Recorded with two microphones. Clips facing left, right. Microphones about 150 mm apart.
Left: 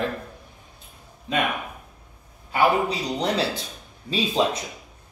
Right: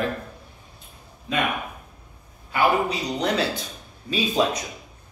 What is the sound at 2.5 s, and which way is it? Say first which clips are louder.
A man's voice: left 1 dB; 30° left (ahead or behind).